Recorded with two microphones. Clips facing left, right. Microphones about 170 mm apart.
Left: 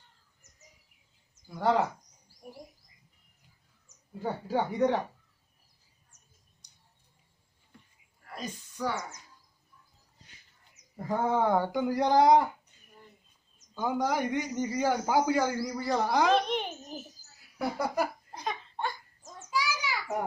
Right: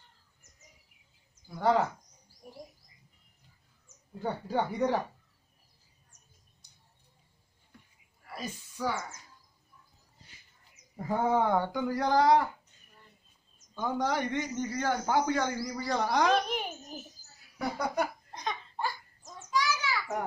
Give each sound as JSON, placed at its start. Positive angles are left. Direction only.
{"t": 1.6, "sound": "speech", "side_deg": 0}
{"t": 4.1, "sound": "speech", "side_deg": 5}
{"t": 8.3, "sound": "speech", "side_deg": -5}
{"t": 11.1, "sound": "speech", "side_deg": -5}
{"t": 11.5, "sound": "a man's voice", "side_deg": 15}
{"t": 13.7, "sound": "a man's voice", "side_deg": 10}
{"t": 17.6, "sound": "laughter", "side_deg": 5}
{"t": 19.4, "sound": "a sound", "side_deg": 10}